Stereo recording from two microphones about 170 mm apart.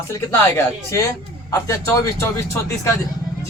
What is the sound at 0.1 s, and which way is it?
A man's voice, 15° left (ahead or behind).